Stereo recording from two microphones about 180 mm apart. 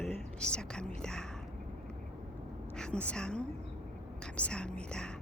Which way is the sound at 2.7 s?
5° left (ahead or behind).